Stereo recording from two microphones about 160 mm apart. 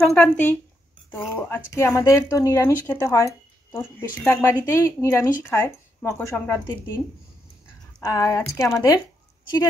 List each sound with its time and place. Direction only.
0.0 s speech: 5° left (ahead or behind)
8.0 s speech: 20° left (ahead or behind)